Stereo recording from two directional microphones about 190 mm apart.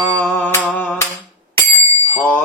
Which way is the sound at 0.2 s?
10° left (ahead or behind).